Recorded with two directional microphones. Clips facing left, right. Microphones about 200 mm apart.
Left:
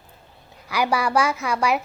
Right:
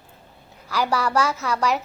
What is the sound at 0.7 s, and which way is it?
A woman's voice, 15° left (ahead or behind).